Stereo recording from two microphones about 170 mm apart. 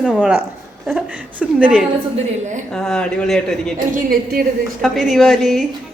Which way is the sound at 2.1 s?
45° right (ahead or behind).